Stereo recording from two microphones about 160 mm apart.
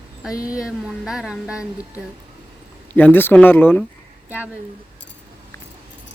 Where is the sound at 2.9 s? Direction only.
10° left (ahead or behind).